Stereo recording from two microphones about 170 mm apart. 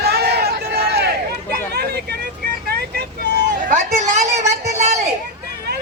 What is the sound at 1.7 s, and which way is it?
Vehicle, 75° right (ahead or behind).